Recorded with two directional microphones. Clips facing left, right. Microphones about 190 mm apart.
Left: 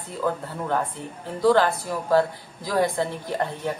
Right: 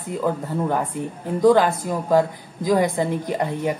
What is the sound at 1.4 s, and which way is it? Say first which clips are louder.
Speech: right 3 dB; 20° right (ahead or behind).